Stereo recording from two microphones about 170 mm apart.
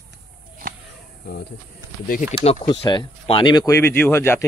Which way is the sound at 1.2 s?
65° left (ahead or behind).